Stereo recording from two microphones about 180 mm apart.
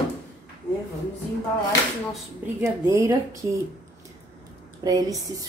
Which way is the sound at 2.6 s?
15° right (ahead or behind).